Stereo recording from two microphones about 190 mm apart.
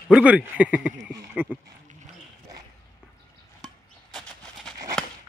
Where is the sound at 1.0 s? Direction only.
20° right (ahead or behind).